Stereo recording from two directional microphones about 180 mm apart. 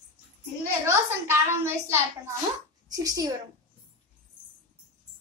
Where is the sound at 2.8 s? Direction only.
20° right (ahead or behind).